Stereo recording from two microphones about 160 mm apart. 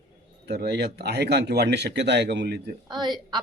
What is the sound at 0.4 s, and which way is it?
Speech, 80° right.